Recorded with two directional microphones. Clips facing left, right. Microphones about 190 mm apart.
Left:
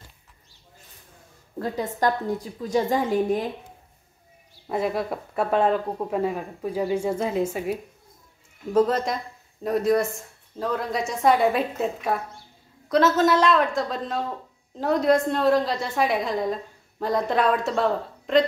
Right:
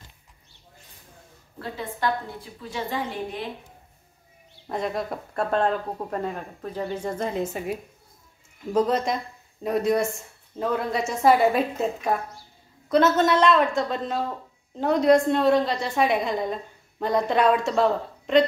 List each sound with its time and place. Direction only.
1.6 s a woman's voice: 40° left (ahead or behind)
4.6 s speech: 5° left (ahead or behind)